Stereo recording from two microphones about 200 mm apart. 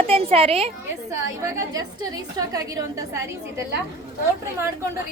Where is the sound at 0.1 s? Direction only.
30° right (ahead or behind).